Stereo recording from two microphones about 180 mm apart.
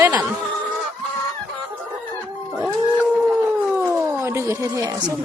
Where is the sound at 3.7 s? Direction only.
10° right (ahead or behind).